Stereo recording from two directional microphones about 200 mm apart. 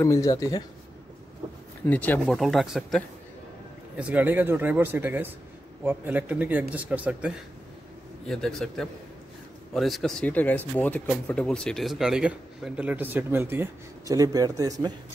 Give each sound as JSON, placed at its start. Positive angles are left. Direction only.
{"t": 0.0, "sound": "speech", "side_deg": 15}
{"t": 1.9, "sound": "speech", "side_deg": 10}